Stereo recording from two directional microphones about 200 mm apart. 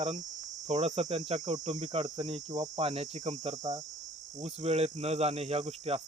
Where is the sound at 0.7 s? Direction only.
35° right (ahead or behind).